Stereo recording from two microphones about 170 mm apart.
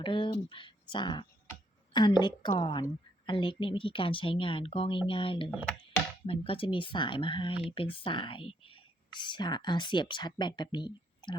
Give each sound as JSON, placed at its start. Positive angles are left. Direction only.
{"t": 0.0, "sound": "speech", "side_deg": 30}